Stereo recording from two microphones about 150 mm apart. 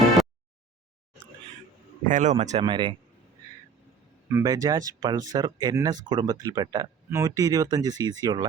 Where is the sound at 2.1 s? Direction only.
55° right (ahead or behind).